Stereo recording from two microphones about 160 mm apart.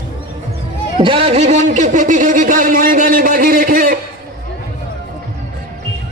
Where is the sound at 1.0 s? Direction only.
35° right (ahead or behind); by 4.0 s 60° right (ahead or behind).